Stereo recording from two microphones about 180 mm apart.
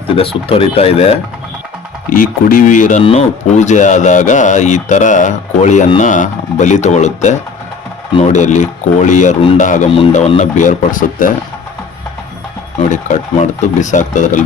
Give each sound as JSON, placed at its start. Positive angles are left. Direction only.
{"t": 0.2, "sound": "speech", "side_deg": 30}
{"t": 2.0, "sound": "speech", "side_deg": 50}
{"t": 9.4, "sound": "speech", "side_deg": 30}
{"t": 12.9, "sound": "speech", "side_deg": 45}